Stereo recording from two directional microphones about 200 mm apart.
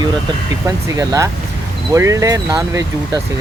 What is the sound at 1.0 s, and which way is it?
Speech, 15° right (ahead or behind).